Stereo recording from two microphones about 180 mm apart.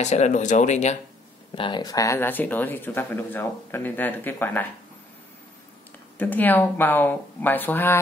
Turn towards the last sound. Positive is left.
turn(degrees=10)  # may be behind; listen again after turning